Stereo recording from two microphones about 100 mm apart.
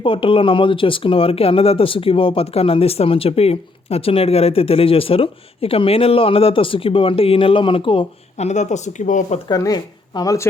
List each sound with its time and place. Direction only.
0.0 s speech: 60° left (ahead or behind); by 8.5 s 75° left (ahead or behind)
9.5 s speech: 40° left (ahead or behind)